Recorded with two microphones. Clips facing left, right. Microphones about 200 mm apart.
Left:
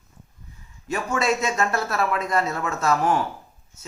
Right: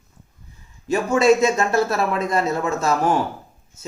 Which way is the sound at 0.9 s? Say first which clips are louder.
Right 8 dB; 25° right (ahead or behind).